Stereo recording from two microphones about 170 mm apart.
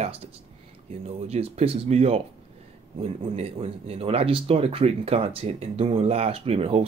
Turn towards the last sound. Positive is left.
turn(degrees=-35)  # may be behind; listen again after turning